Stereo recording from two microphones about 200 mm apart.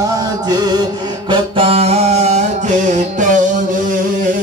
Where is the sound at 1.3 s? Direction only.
30° right (ahead or behind).